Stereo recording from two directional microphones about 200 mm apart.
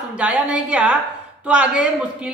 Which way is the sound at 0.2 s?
5° right (ahead or behind).